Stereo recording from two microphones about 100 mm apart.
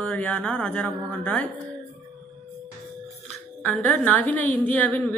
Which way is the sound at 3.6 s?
15° left (ahead or behind).